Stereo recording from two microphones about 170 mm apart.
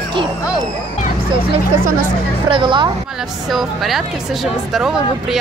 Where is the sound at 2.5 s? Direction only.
30° right (ahead or behind).